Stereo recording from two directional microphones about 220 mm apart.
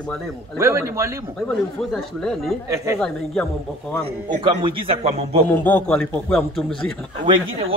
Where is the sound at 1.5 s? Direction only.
5° left (ahead or behind).